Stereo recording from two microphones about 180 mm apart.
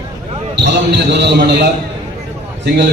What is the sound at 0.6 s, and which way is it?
Speech, 70° right (ahead or behind).